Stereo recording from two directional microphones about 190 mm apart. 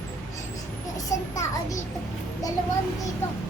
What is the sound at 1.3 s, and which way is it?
A child's voice, 15° left (ahead or behind).